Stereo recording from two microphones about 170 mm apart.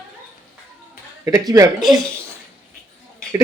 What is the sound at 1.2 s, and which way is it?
Speech, 20° right (ahead or behind).